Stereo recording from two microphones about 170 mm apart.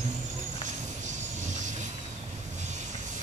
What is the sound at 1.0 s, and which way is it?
Vehicle, 45° right (ahead or behind).